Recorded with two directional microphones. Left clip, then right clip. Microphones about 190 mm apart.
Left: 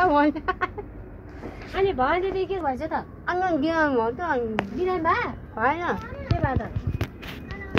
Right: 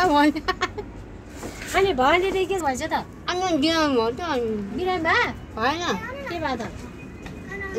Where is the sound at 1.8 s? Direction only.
45° right (ahead or behind).